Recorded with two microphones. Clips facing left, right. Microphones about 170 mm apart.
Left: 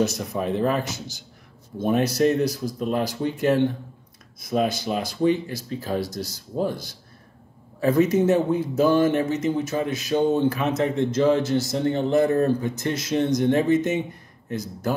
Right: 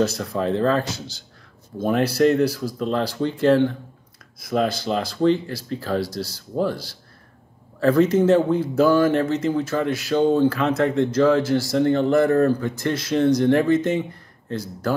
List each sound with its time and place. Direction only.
0.0 s speech: 20° left (ahead or behind)